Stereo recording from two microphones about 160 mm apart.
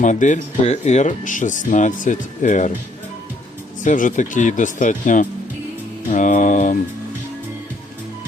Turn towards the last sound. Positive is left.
turn(degrees=50)  # may be behind; listen again after turning